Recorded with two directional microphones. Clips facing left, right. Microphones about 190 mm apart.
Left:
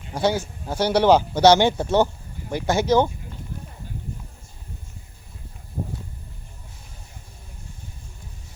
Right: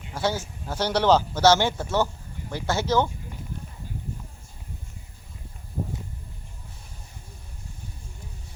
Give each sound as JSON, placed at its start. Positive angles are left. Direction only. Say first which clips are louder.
{"t": 0.1, "sound": "a man's voice", "louder": "left 5 dB", "side_deg": 15}